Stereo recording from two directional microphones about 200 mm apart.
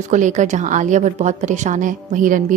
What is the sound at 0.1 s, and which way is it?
A woman's voice, 40° right (ahead or behind).